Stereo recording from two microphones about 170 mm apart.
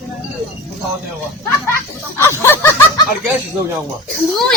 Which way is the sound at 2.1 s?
15° left (ahead or behind).